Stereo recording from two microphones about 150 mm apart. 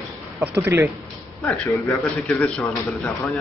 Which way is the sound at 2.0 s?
5° left (ahead or behind).